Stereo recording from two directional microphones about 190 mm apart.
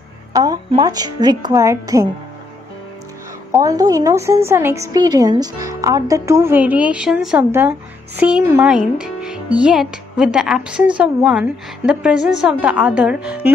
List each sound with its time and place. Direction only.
0.3 s a woman's voice: 20° right (ahead or behind)
3.5 s a woman's voice: 20° right (ahead or behind)